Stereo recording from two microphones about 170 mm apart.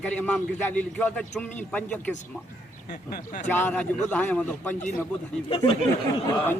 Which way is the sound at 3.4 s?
10° left (ahead or behind).